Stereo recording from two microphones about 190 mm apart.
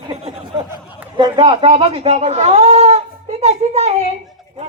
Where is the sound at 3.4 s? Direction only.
35° right (ahead or behind).